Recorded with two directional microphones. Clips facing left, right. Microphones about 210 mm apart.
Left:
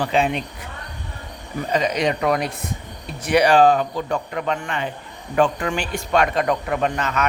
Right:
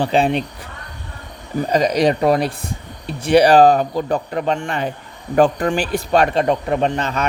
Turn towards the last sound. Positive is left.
turn(degrees=-30)  # may be behind; listen again after turning